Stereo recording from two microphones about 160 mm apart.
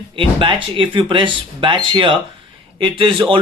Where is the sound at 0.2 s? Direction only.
30° right (ahead or behind).